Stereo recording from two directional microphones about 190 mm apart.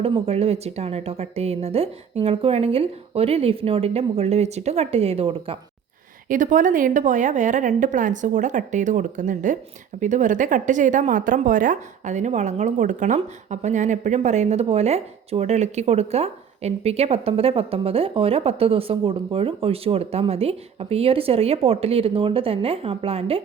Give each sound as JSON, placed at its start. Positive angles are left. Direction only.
{"t": 0.0, "sound": "a woman's voice", "side_deg": -30}
{"t": 6.2, "sound": "a woman's voice", "side_deg": -45}